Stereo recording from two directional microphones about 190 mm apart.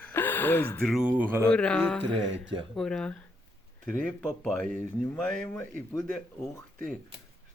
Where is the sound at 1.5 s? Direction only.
5° left (ahead or behind).